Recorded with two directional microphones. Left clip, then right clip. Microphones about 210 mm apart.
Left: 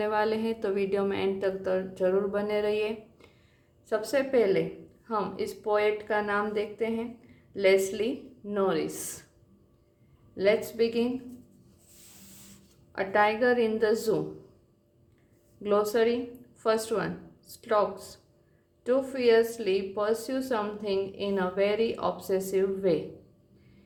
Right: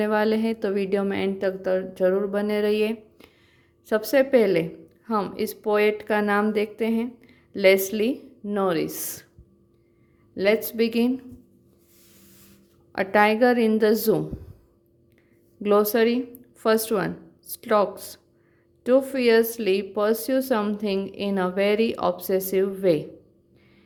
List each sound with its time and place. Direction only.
0.0 s speech: 35° right (ahead or behind)
10.3 s speech: 40° right (ahead or behind)
12.9 s speech: 40° right (ahead or behind)
15.6 s speech: 40° right (ahead or behind)